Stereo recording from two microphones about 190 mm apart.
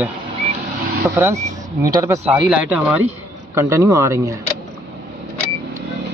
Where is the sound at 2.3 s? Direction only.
5° right (ahead or behind).